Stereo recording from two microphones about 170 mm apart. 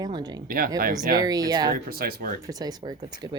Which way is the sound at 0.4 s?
60° right (ahead or behind).